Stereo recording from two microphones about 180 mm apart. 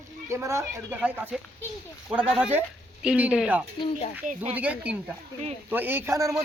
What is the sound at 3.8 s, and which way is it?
Speech, 35° left (ahead or behind).